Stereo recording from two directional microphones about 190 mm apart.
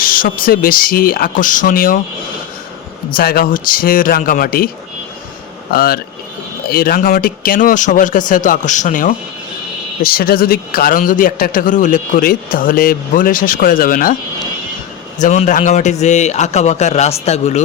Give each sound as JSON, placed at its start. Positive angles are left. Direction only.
{"t": 0.0, "sound": "a man's voice", "side_deg": 50}
{"t": 3.2, "sound": "a man's voice", "side_deg": 50}
{"t": 5.7, "sound": "a man's voice", "side_deg": 50}
{"t": 15.2, "sound": "a man's voice", "side_deg": 40}